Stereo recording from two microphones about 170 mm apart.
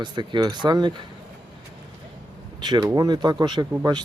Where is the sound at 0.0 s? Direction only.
25° right (ahead or behind).